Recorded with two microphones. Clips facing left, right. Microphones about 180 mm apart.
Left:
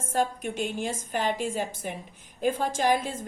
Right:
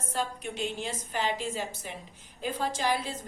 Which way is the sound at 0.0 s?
50° left (ahead or behind).